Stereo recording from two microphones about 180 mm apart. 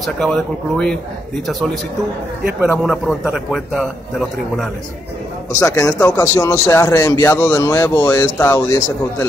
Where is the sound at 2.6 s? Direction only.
10° right (ahead or behind).